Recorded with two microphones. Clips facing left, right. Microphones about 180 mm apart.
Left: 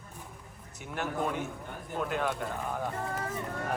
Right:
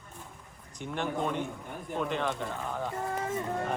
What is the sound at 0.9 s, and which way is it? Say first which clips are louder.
A man's voice: right 1 dB; 5° left (ahead or behind).